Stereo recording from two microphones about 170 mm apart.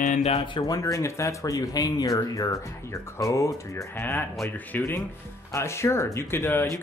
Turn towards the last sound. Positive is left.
turn(degrees=15)  # may be behind; listen again after turning